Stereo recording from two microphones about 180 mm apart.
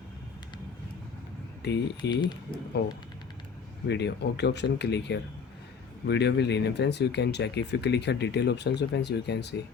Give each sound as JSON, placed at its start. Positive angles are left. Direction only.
{"t": 1.6, "sound": "speech", "side_deg": 65}
{"t": 2.2, "sound": "speech", "side_deg": 25}
{"t": 2.8, "sound": "speech", "side_deg": 65}